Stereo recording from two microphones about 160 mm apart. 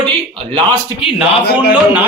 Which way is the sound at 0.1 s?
35° right (ahead or behind).